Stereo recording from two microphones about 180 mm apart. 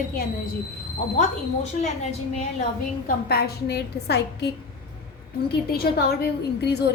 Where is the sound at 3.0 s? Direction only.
60° left (ahead or behind).